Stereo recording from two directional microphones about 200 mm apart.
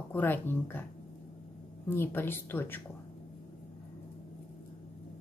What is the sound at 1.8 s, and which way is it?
Speech, 10° left (ahead or behind).